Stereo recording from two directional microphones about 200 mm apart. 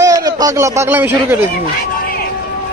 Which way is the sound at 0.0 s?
15° right (ahead or behind).